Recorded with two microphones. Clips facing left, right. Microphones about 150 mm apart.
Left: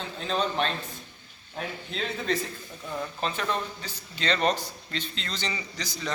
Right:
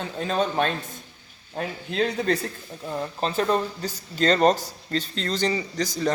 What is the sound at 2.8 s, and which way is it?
Speech, 35° right (ahead or behind).